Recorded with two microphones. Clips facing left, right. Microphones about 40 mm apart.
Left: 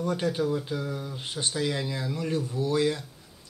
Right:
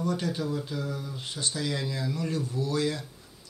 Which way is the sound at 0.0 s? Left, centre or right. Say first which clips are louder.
Left 3 dB; left.